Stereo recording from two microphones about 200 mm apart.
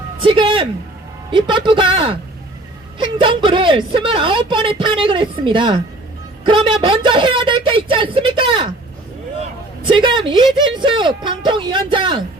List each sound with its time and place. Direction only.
0.2 s a woman's voice: 25° right (ahead or behind)
6.8 s a woman's voice: 25° right (ahead or behind)
9.8 s a woman's voice: 25° right (ahead or behind)